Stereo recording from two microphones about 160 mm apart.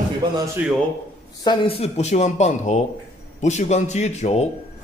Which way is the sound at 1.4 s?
35° left (ahead or behind).